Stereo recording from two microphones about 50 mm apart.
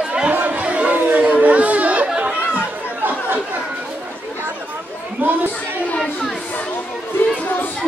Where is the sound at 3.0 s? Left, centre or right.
Right.